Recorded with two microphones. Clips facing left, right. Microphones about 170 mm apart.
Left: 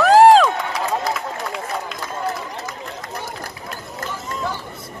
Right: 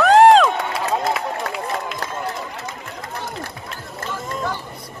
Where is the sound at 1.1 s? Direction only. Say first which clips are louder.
Right 2 dB; centre (ahead or behind).